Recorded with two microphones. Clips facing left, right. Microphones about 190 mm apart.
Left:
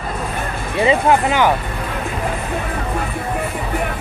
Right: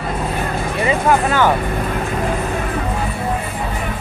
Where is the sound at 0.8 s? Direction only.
20° left (ahead or behind).